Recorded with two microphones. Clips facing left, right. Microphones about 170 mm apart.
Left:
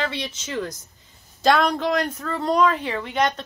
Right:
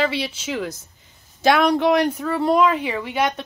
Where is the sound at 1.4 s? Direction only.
10° right (ahead or behind).